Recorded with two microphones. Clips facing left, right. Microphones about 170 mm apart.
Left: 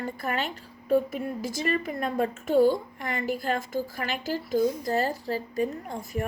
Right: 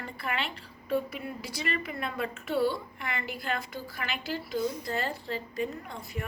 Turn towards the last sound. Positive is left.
turn(degrees=40)  # may be behind; listen again after turning